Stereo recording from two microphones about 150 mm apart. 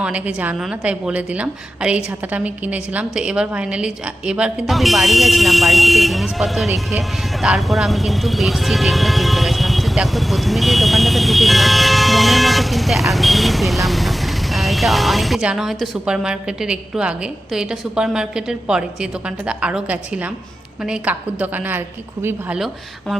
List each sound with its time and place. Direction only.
0.0 s a woman's voice: 10° right (ahead or behind)
22.5 s speech: centre (ahead or behind)